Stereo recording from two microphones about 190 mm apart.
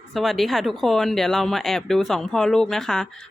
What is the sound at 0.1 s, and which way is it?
A man's voice, centre (ahead or behind).